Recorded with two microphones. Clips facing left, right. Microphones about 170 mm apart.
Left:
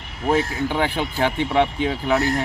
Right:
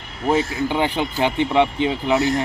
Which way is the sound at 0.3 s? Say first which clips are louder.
Right 1 dB; 15° right (ahead or behind).